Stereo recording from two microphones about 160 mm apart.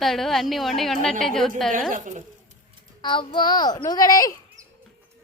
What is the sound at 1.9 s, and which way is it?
Speech, 55° right (ahead or behind).